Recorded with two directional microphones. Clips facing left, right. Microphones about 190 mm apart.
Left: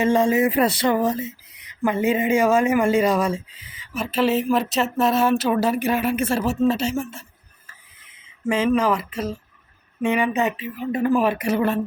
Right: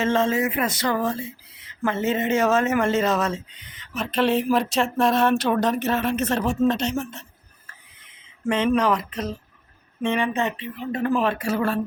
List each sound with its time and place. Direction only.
0.0 s speech: 15° left (ahead or behind)
0.4 s a sound: 35° left (ahead or behind)
0.9 s speech: 20° left (ahead or behind)
8.4 s speech: 5° left (ahead or behind)